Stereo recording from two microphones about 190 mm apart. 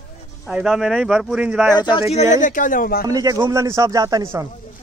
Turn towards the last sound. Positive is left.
turn(degrees=-20)  # may be behind; listen again after turning